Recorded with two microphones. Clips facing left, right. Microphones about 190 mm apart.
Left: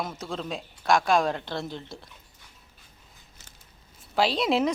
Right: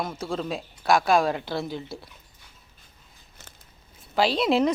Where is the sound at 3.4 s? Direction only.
55° right (ahead or behind).